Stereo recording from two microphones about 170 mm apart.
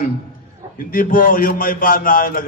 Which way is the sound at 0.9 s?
55° left (ahead or behind).